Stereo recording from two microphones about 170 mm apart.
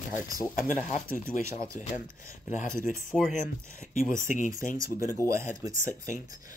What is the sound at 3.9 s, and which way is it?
Speech, 50° left (ahead or behind).